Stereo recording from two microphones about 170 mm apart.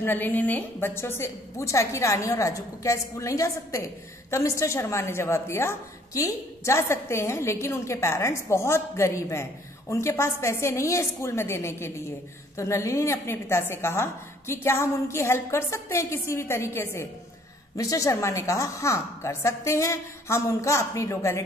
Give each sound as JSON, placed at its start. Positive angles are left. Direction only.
{"t": 0.0, "sound": "a woman's voice", "side_deg": 10}